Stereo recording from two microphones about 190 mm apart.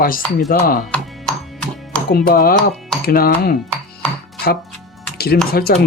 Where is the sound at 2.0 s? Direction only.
55° left (ahead or behind).